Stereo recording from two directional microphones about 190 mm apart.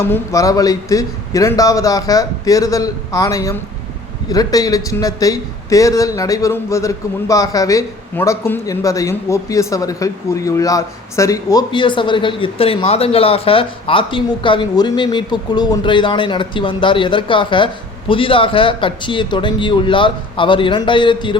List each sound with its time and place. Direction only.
0.0 s a man's voice: 15° left (ahead or behind)